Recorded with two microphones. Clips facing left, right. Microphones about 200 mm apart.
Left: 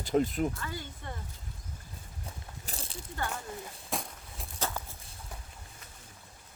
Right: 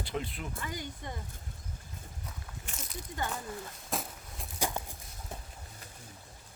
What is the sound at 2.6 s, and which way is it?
Biting, 30° left (ahead or behind).